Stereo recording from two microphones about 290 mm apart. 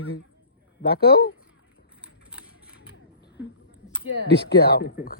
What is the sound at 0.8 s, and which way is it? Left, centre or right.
Speech, left.